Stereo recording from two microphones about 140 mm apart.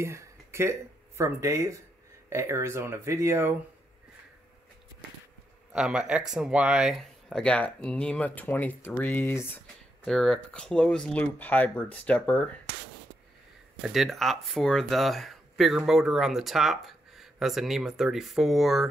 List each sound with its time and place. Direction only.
0.0 s speech: 20° right (ahead or behind)
5.7 s speech: 5° right (ahead or behind); by 9.6 s 20° left (ahead or behind)
10.0 s speech: 5° left (ahead or behind)
13.8 s speech: centre (ahead or behind)